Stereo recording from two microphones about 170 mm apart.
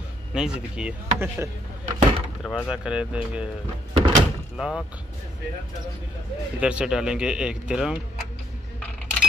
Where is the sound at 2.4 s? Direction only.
Centre (ahead or behind).